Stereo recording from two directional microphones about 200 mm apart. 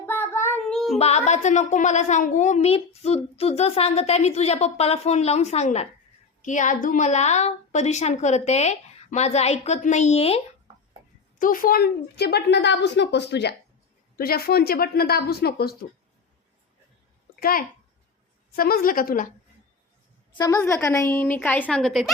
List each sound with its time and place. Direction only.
0.0 s child singing: 10° left (ahead or behind)
0.9 s a woman's voice: 30° left (ahead or behind)
11.3 s a woman's voice: 45° left (ahead or behind)
18.5 s speech: 50° left (ahead or behind)
20.3 s a woman's voice: 20° left (ahead or behind); by 22.1 s centre (ahead or behind)